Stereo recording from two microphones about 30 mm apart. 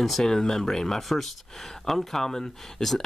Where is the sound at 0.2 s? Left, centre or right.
Centre.